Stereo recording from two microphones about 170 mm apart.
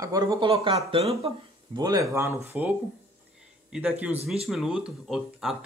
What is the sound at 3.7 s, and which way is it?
Speech, 5° right (ahead or behind).